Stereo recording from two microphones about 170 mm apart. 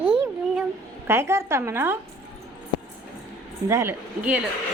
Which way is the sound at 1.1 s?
15° right (ahead or behind).